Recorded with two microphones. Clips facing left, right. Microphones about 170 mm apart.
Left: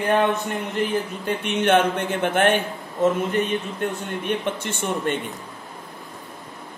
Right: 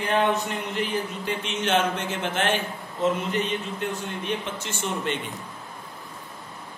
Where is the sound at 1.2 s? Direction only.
60° left (ahead or behind).